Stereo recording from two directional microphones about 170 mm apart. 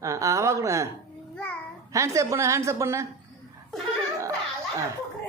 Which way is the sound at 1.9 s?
20° right (ahead or behind).